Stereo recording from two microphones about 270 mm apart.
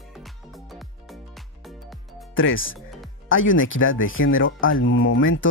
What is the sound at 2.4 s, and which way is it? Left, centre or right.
Speech, left.